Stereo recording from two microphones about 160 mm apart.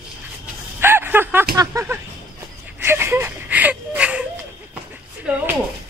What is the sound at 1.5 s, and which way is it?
Speech, 15° right (ahead or behind).